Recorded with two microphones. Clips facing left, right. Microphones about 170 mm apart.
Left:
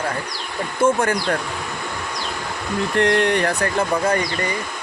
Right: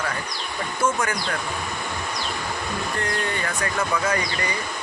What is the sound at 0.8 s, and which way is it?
Speech, 30° left (ahead or behind).